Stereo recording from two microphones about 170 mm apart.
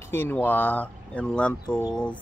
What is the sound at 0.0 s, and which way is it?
Speech, 15° left (ahead or behind).